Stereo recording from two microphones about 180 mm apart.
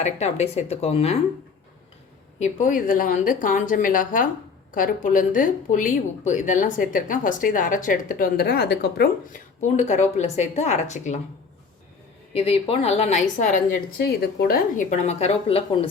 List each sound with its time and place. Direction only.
0.0 s a woman's voice: 40° left (ahead or behind)
2.4 s a woman's voice: 45° left (ahead or behind)
9.6 s a woman's voice: 40° left (ahead or behind)
12.3 s a woman's voice: 35° left (ahead or behind)
14.0 s a woman's voice: 60° left (ahead or behind); by 15.9 s 30° left (ahead or behind)